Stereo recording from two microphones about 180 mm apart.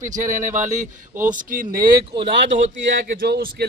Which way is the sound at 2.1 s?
30° right (ahead or behind).